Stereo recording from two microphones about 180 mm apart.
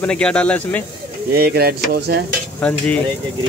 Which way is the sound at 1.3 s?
60° right (ahead or behind).